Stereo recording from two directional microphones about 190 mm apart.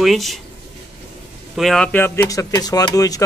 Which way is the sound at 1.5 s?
Centre (ahead or behind).